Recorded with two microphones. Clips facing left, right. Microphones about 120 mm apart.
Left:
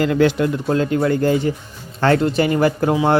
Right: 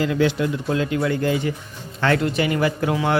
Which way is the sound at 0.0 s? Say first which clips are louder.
Left 4 dB; 50° left (ahead or behind).